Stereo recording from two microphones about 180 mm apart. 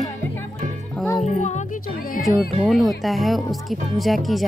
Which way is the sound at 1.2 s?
40° left (ahead or behind).